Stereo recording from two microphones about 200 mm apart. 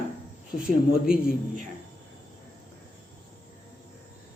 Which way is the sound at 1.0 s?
5° right (ahead or behind).